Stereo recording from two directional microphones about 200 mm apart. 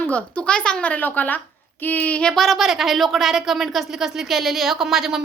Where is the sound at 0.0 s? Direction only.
5° left (ahead or behind).